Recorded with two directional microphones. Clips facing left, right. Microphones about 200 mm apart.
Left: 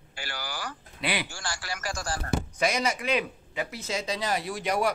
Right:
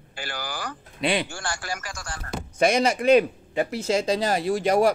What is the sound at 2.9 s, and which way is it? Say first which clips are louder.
Speech: right 11 dB; 45° right (ahead or behind).